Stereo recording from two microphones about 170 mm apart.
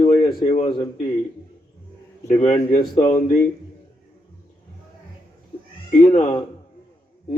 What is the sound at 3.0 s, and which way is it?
Speech, 20° left (ahead or behind).